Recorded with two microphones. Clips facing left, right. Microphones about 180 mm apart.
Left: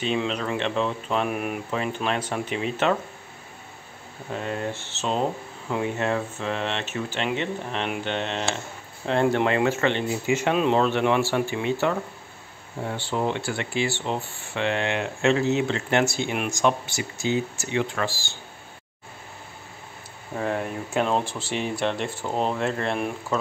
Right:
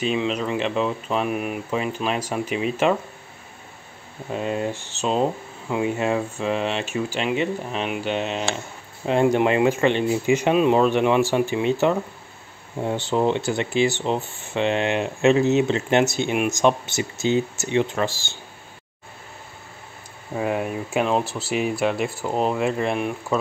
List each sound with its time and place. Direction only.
0.0 s speech: 5° right (ahead or behind)
4.3 s speech: 20° right (ahead or behind)
20.3 s speech: 10° right (ahead or behind)